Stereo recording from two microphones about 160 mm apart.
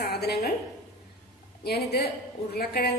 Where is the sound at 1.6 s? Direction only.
85° left.